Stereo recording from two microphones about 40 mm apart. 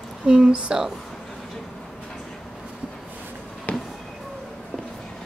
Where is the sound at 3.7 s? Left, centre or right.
Left.